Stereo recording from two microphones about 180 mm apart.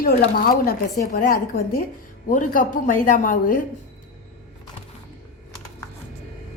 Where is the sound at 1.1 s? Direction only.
55° left (ahead or behind).